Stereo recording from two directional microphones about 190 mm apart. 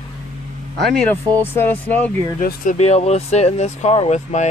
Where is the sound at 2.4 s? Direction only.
45° left (ahead or behind).